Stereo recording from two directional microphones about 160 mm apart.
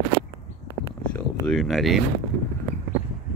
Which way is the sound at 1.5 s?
Centre (ahead or behind).